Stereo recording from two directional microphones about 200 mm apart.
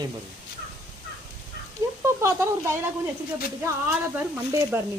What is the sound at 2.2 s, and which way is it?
Speech, 15° right (ahead or behind).